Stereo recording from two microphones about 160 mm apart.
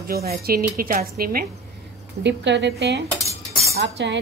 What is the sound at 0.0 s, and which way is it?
Speech, 70° right (ahead or behind).